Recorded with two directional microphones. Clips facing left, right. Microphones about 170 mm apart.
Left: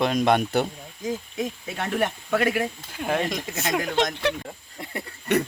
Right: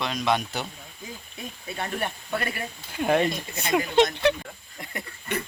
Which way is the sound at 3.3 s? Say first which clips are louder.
Left 2 dB; 90° left.